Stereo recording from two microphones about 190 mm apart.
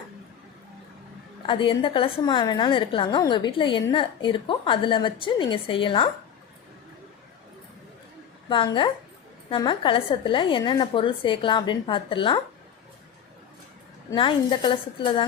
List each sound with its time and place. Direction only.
1.5 s a woman's voice: 25° left (ahead or behind)
8.4 s a woman's voice: 25° left (ahead or behind)
14.1 s a woman's voice: 25° left (ahead or behind)